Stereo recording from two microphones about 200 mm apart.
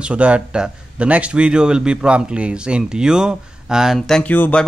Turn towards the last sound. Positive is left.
turn(degrees=10)  # may be behind; listen again after turning